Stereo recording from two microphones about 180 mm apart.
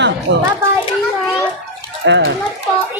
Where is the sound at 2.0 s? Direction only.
85° right.